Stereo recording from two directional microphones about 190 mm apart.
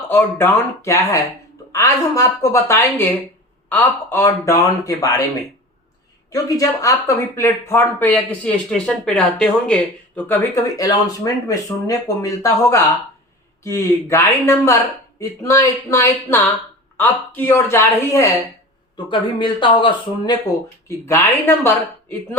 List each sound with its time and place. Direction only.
0.1 s speech: 10° left (ahead or behind)
6.3 s speech: 15° left (ahead or behind)
20.8 s speech: 15° left (ahead or behind)